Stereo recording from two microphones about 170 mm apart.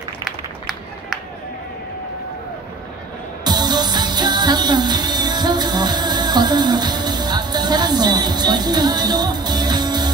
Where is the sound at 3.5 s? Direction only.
25° right (ahead or behind).